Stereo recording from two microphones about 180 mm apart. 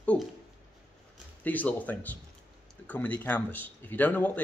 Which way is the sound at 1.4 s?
10° left (ahead or behind).